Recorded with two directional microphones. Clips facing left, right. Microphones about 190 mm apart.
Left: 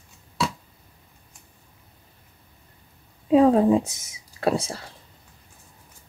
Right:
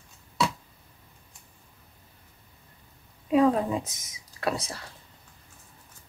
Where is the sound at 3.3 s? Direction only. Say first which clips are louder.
Left 6 dB; 30° left (ahead or behind).